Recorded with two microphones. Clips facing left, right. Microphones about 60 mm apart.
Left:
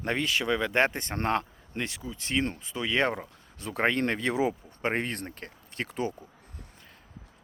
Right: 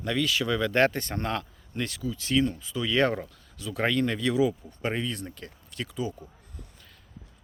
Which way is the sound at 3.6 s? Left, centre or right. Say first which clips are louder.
Even; left.